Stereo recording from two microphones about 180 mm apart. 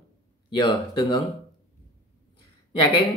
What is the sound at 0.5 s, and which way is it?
Speech, 25° left (ahead or behind).